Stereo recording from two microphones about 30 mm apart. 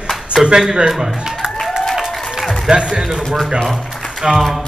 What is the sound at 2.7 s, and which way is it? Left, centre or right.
Speech, right.